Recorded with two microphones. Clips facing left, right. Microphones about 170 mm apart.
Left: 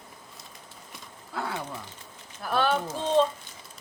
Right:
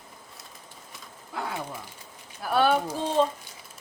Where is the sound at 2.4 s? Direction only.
10° right (ahead or behind).